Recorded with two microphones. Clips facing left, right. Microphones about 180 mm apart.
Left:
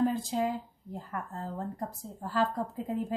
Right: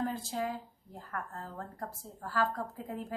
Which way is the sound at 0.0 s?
20° left (ahead or behind).